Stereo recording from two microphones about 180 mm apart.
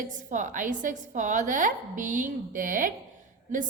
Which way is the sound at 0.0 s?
45° right (ahead or behind).